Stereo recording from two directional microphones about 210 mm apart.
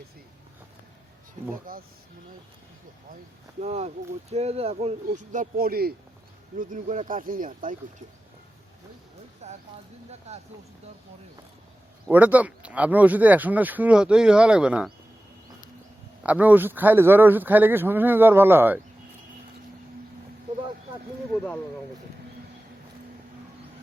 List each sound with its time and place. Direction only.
1.7 s speech: 40° right (ahead or behind)
3.6 s speech: 30° right (ahead or behind)
9.4 s speech: 35° right (ahead or behind)
12.1 s speech: 5° right (ahead or behind)
16.2 s speech: 5° right (ahead or behind)
21.3 s speech: 5° left (ahead or behind)